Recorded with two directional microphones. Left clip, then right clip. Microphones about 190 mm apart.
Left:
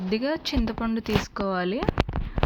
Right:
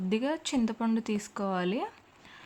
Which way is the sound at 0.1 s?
15° left (ahead or behind).